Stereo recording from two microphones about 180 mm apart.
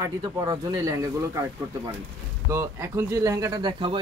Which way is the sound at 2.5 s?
15° right (ahead or behind).